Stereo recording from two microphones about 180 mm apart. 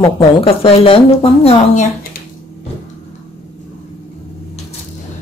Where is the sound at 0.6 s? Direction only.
30° left (ahead or behind).